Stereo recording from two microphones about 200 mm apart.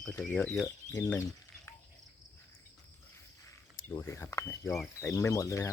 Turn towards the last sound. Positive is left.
turn(degrees=15)  # may be behind; listen again after turning